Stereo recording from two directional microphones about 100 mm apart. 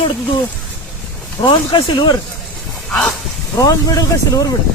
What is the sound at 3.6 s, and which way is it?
Speech, 35° left (ahead or behind).